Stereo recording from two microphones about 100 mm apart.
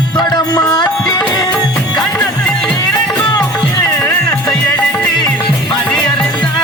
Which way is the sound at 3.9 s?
30° left (ahead or behind).